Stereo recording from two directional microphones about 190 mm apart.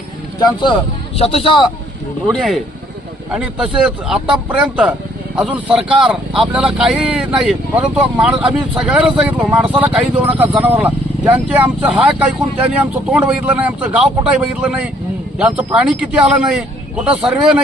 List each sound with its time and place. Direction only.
0.3 s speech: 25° left (ahead or behind)
2.2 s speech: 5° left (ahead or behind)
15.4 s speech: 5° right (ahead or behind)